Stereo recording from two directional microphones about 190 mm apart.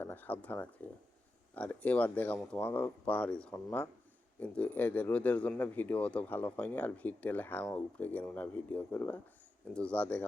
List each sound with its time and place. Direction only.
0.0 s speech: 10° left (ahead or behind)